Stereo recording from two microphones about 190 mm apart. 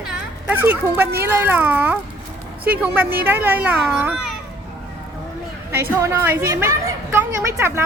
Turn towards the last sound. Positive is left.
turn(degrees=-10)  # may be behind; listen again after turning